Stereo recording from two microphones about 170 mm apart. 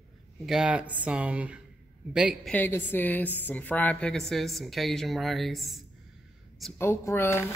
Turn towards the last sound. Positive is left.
turn(degrees=15)  # may be behind; listen again after turning